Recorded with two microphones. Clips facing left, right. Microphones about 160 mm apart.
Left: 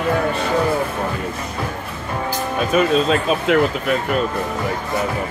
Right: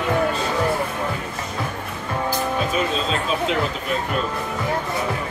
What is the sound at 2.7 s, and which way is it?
Speech, 60° left (ahead or behind).